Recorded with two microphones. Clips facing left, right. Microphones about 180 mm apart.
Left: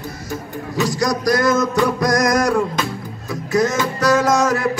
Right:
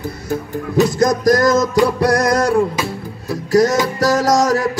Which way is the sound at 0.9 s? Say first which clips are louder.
Right 1 dB; 50° right (ahead or behind).